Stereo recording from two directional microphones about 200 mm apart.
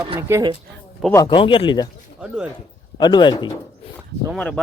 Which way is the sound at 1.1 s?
20° left (ahead or behind).